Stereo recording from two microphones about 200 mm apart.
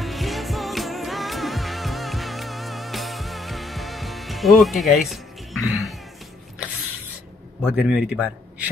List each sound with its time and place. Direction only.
0.0 s music: centre (ahead or behind)
7.7 s a man's voice: 5° right (ahead or behind)